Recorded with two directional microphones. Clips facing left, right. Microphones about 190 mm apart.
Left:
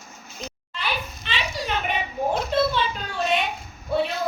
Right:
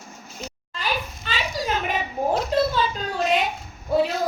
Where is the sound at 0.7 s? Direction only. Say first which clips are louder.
Right 2 dB; 40° right (ahead or behind).